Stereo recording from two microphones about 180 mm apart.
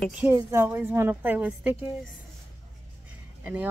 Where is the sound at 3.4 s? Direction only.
10° right (ahead or behind).